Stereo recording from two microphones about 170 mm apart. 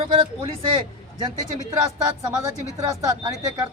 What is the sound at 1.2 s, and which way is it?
Speech, 20° right (ahead or behind).